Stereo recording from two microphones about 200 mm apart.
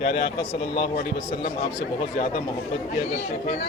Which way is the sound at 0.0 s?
55° left (ahead or behind).